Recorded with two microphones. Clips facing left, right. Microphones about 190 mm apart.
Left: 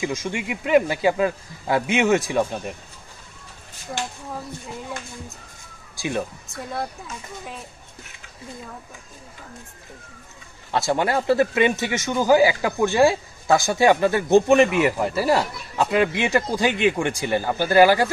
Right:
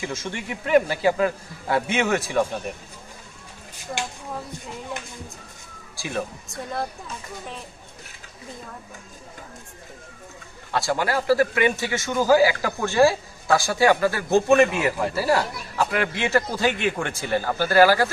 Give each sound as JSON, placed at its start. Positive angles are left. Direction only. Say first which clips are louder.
{"t": 0.0, "sound": "speech", "louder": "left 4 dB", "side_deg": 15}
{"t": 3.9, "sound": "speech", "louder": "left 1 dB", "side_deg": 0}
{"t": 5.9, "sound": "speech", "louder": "left 3 dB", "side_deg": 20}
{"t": 10.7, "sound": "a man's voice", "louder": "left 2 dB", "side_deg": 20}